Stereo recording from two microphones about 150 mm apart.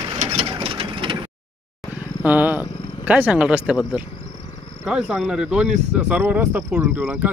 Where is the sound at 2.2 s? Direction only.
10° right (ahead or behind).